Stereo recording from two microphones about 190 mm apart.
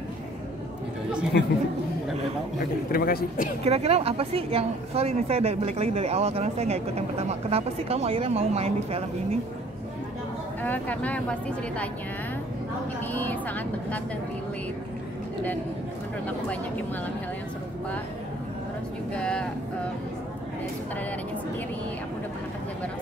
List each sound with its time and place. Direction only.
1.3 s speech: 65° left (ahead or behind)
2.9 s a man's voice: 55° left (ahead or behind)
3.6 s a woman's voice: 35° right (ahead or behind)
10.6 s speech: 10° left (ahead or behind)
13.1 s speech: 10° left (ahead or behind)
19.1 s speech: 5° left (ahead or behind)